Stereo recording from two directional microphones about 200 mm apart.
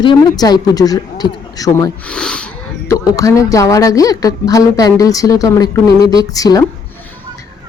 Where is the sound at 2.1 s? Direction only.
5° left (ahead or behind).